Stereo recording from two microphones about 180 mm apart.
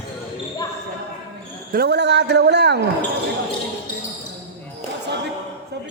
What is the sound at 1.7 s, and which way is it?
A man's voice, 60° right (ahead or behind).